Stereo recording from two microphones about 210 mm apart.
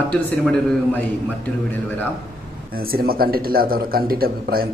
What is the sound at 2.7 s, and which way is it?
Speech, 45° right (ahead or behind).